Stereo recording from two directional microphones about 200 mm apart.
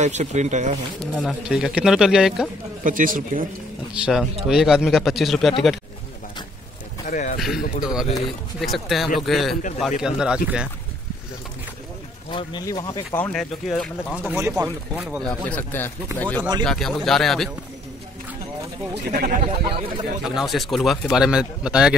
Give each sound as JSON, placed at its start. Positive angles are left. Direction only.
{"t": 0.0, "sound": "speech", "side_deg": -35}
{"t": 1.1, "sound": "speech", "side_deg": 0}
{"t": 2.8, "sound": "speech", "side_deg": -45}
{"t": 4.0, "sound": "speech", "side_deg": 0}
{"t": 7.1, "sound": "speech", "side_deg": 40}
{"t": 7.3, "sound": "speech", "side_deg": 0}
{"t": 12.3, "sound": "speech", "side_deg": 25}
{"t": 13.2, "sound": "speech", "side_deg": 5}
{"t": 19.0, "sound": "speech", "side_deg": -50}
{"t": 20.2, "sound": "speech", "side_deg": 0}